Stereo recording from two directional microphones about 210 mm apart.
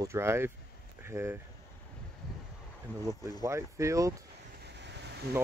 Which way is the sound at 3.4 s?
15° right (ahead or behind).